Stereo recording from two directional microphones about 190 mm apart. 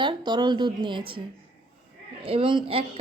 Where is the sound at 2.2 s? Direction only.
30° right (ahead or behind).